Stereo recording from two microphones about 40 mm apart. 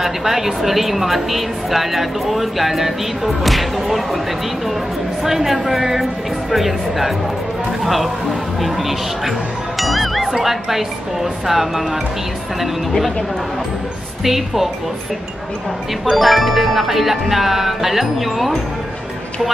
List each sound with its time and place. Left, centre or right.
0.0 s a woman's voice: centre
5.2 s a woman's voice: centre
9.8 s music: centre
10.3 s a woman's voice: centre
14.2 s a woman's voice: centre
16.1 s a woman's voice: centre